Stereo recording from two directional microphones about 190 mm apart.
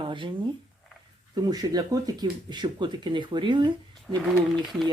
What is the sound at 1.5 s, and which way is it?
Speech, 20° right (ahead or behind).